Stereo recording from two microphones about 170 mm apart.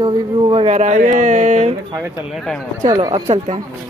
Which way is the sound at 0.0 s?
30° right (ahead or behind).